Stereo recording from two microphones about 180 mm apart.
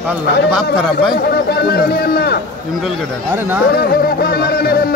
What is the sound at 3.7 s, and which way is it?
A man's voice, 60° left (ahead or behind).